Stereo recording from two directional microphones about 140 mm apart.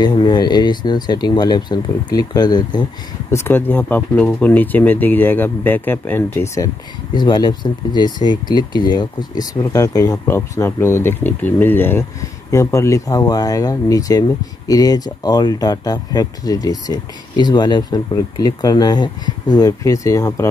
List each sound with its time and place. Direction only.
0.0 s speech: 30° left (ahead or behind)
3.3 s speech: 20° left (ahead or behind)
7.2 s speech: 30° left (ahead or behind)